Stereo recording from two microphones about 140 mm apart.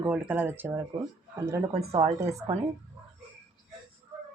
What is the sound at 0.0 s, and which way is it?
Speech, 10° right (ahead or behind).